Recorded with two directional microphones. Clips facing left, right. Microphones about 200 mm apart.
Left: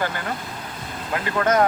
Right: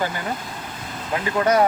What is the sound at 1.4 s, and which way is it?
Speech, 10° right (ahead or behind).